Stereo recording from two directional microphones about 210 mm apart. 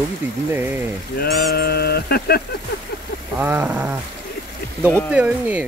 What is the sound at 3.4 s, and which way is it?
Speech, 10° right (ahead or behind).